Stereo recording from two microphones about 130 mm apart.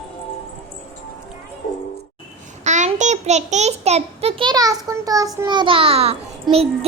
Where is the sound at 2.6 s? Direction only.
65° right (ahead or behind); by 4.4 s 50° right (ahead or behind).